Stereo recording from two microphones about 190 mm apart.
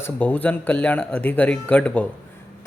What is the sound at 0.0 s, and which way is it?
A man's voice, 10° left (ahead or behind).